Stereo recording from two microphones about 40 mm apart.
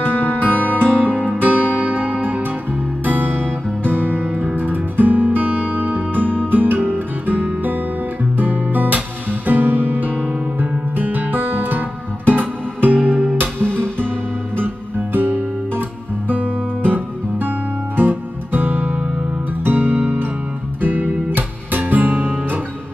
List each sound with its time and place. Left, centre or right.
0.0 s music: left
0.5 s music: right
3.1 s music: right
4.6 s music: right
8.4 s guitar: right
9.5 s music: right
15.1 s music: right
21.4 s guitar: right